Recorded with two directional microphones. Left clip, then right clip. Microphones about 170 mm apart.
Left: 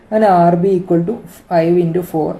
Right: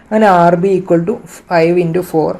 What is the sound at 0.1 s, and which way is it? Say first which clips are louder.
Speech: right 2 dB; 45° right (ahead or behind).